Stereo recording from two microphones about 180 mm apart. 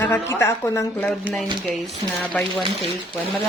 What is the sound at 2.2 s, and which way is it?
Speech, 5° left (ahead or behind).